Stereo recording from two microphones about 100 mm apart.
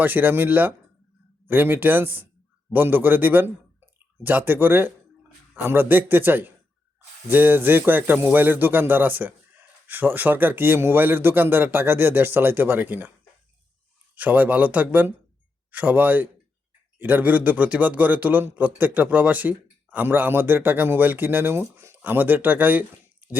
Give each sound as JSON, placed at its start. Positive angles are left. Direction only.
{"t": 0.0, "sound": "speech", "side_deg": -20}
{"t": 14.2, "sound": "speech", "side_deg": -15}
{"t": 23.2, "sound": "dog", "side_deg": -15}